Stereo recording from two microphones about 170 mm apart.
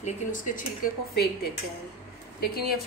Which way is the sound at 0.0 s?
50° left (ahead or behind).